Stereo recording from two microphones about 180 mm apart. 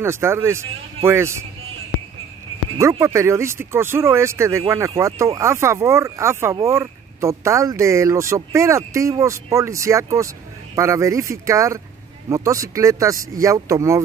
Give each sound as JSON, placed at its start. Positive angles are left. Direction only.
{"t": 0.0, "sound": "speech", "side_deg": -15}
{"t": 2.8, "sound": "speech", "side_deg": -15}